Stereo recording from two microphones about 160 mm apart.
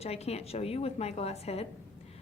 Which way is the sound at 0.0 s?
40° left (ahead or behind).